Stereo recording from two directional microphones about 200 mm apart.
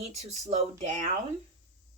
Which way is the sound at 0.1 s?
30° right (ahead or behind).